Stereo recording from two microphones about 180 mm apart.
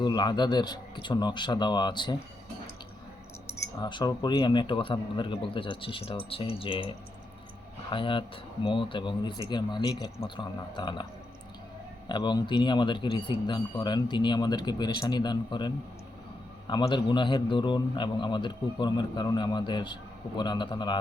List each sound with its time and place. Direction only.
0.0 s a man's voice: 25° left (ahead or behind)
3.4 s a man's voice: 20° left (ahead or behind)
12.0 s a man's voice: 25° left (ahead or behind)